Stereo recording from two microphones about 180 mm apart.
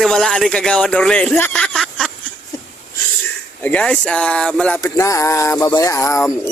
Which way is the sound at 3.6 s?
10° left (ahead or behind).